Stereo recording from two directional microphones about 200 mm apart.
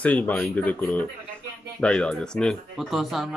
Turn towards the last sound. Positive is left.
turn(degrees=0)  # may be behind; listen again after turning